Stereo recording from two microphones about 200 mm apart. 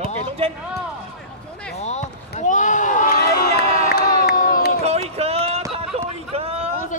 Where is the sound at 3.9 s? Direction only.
50° left (ahead or behind).